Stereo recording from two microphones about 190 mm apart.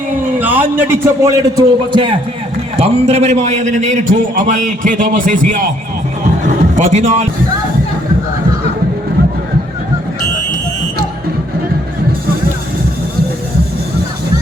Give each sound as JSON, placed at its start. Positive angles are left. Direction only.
{"t": 0.3, "sound": "a man's voice", "side_deg": -10}
{"t": 6.7, "sound": "speech", "side_deg": -35}